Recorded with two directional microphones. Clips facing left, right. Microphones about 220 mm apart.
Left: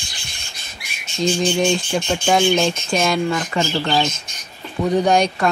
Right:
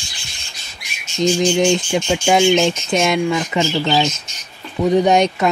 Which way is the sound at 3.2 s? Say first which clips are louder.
Right 3 dB; 10° right (ahead or behind).